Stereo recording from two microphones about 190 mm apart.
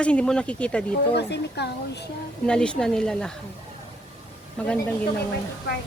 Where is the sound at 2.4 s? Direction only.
5° left (ahead or behind).